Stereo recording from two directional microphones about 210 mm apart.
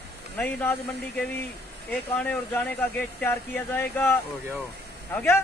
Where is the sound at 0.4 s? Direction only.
10° left (ahead or behind).